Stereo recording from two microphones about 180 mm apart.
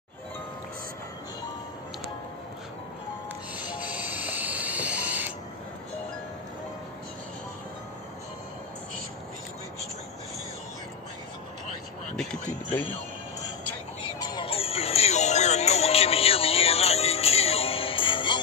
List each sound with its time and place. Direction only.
3.5 s printer: 5° right (ahead or behind)
12.2 s a sound: 5° left (ahead or behind)
14.2 s music: 25° left (ahead or behind)